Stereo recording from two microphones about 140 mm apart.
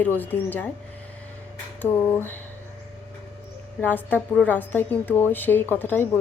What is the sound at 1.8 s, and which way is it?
Speech, 15° left (ahead or behind).